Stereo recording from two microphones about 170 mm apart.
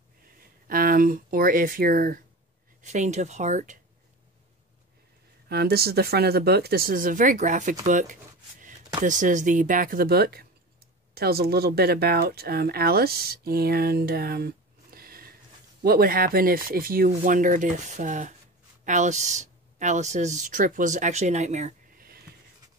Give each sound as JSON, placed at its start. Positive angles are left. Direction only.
{"t": 0.7, "sound": "speech", "side_deg": -55}
{"t": 2.8, "sound": "speech", "side_deg": -45}
{"t": 5.5, "sound": "speech", "side_deg": -70}
{"t": 22.0, "sound": "a sound", "side_deg": -65}